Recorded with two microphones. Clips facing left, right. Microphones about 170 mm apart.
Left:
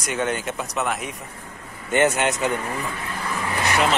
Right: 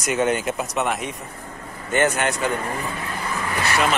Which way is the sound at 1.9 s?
20° left (ahead or behind).